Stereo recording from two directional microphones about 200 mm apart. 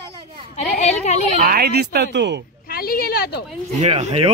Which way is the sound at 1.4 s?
50° right (ahead or behind).